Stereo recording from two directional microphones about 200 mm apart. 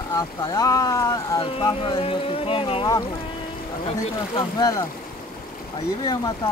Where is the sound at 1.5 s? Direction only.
25° left (ahead or behind).